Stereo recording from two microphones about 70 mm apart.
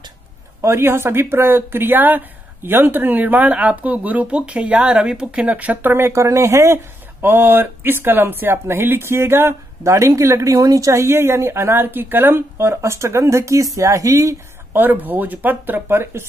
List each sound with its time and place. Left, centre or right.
0.6 s speech: right
7.2 s speech: right
14.7 s speech: right